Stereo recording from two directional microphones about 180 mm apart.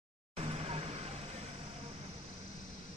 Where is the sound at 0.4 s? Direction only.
35° right (ahead or behind).